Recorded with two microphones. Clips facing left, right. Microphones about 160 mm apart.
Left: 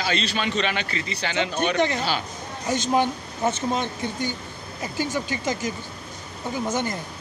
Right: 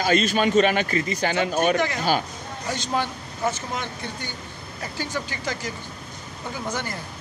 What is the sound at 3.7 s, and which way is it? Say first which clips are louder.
A man's voice: left 5 dB; 20° left (ahead or behind).